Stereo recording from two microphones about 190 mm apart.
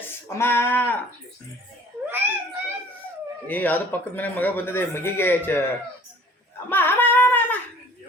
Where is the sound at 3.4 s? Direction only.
10° left (ahead or behind).